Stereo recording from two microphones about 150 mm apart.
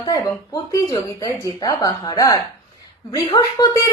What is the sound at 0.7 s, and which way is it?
A woman's voice, 20° left (ahead or behind).